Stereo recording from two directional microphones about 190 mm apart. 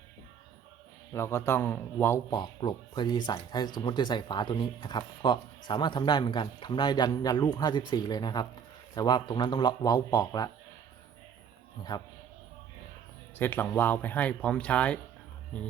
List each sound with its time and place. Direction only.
1.1 s a man's voice: 15° left (ahead or behind)
11.8 s speech: 20° left (ahead or behind)
13.4 s a man's voice: 10° left (ahead or behind)